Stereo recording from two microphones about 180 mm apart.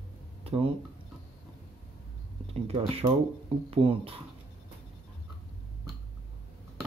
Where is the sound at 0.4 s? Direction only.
30° right (ahead or behind).